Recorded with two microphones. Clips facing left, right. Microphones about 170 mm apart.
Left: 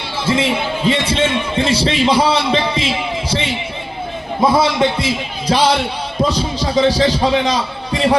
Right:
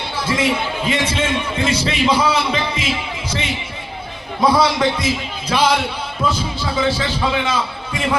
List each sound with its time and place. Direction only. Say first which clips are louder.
0.3 s a man's voice: left 3 dB; 25° left (ahead or behind)
4.4 s a man's voice: left 2 dB; 25° left (ahead or behind)